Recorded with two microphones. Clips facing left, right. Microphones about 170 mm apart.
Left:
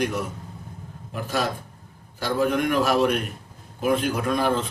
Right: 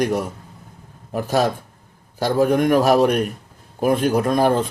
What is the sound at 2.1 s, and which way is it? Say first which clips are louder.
A man's voice: right 6 dB; 40° right (ahead or behind).